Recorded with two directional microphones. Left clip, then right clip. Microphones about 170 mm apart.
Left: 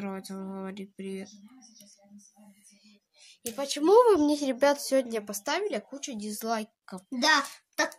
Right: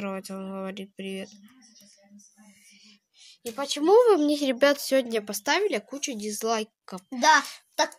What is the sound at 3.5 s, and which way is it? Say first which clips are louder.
Speech: right 1 dB; 5° right (ahead or behind).